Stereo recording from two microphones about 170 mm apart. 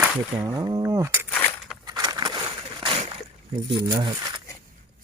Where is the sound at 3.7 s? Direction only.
25° right (ahead or behind).